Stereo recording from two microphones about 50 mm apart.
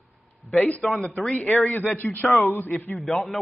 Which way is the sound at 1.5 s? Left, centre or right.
Left.